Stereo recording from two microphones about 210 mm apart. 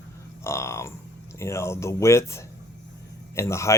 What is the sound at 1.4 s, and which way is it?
Speech, 15° left (ahead or behind).